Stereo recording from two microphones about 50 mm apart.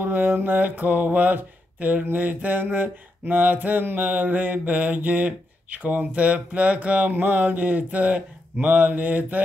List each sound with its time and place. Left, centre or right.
0.0 s speech: right
2.0 s mantra: right